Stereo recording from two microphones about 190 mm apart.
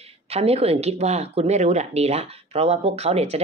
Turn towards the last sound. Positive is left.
turn(degrees=-35)  # may be behind; listen again after turning